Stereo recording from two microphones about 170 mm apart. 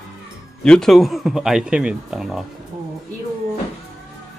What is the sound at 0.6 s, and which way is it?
Speech, centre (ahead or behind).